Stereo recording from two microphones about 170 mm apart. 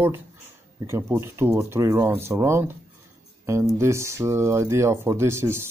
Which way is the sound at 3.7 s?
15° right (ahead or behind).